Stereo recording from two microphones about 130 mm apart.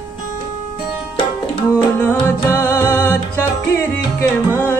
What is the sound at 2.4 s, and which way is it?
Music, 20° left (ahead or behind).